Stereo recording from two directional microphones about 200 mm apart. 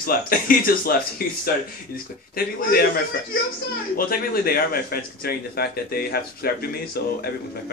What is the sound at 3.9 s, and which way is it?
A man's voice, 45° left (ahead or behind).